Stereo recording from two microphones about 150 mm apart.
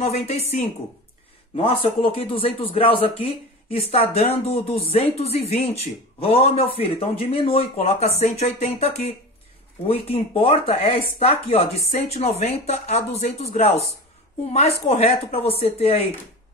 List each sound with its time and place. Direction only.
0.0 s speech: 45° left (ahead or behind)